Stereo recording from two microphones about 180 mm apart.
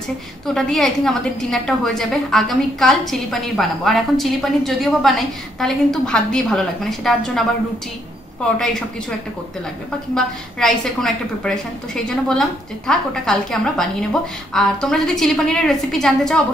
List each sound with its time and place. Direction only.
0.6 s a woman's voice: centre (ahead or behind)
10.1 s a woman's voice: 5° left (ahead or behind)